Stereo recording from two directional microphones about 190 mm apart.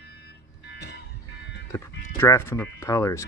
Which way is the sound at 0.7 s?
60° left (ahead or behind).